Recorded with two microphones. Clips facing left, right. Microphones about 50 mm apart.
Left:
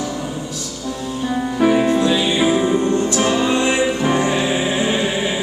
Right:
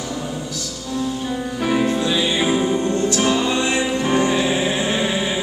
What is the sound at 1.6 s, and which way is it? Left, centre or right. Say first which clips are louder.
Music: left 5 dB; centre.